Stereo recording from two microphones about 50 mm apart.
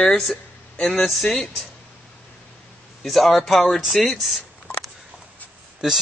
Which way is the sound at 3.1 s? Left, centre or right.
Centre.